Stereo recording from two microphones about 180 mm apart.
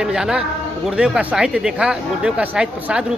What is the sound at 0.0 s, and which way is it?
A man's voice, 5° right (ahead or behind).